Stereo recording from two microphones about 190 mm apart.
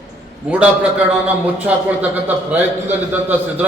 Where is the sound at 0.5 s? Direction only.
5° right (ahead or behind).